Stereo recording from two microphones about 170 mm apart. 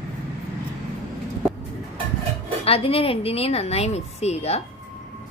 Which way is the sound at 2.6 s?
35° left (ahead or behind).